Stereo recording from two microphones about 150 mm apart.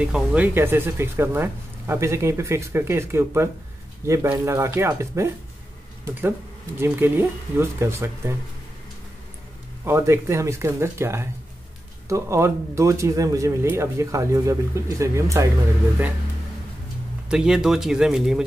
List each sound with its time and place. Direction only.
0.0 s speech: 10° right (ahead or behind)
6.8 s speech: 15° right (ahead or behind)
9.8 s speech: 15° right (ahead or behind)
17.3 s speech: 5° right (ahead or behind)